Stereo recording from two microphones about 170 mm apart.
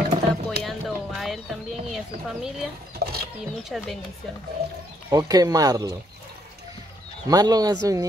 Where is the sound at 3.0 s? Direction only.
70° right (ahead or behind).